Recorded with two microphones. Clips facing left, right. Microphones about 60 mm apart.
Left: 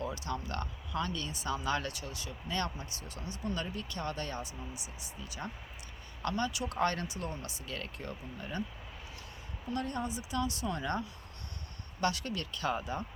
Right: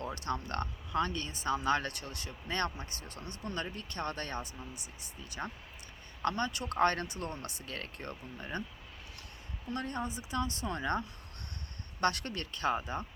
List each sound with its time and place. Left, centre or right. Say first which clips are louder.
0.0 s a sound: right 1 dB; right
0.4 s speech: right 2 dB; right
6.2 s speech: right 1 dB; right
9.7 s speech: left 1 dB; right
11.9 s speech: right 1 dB; right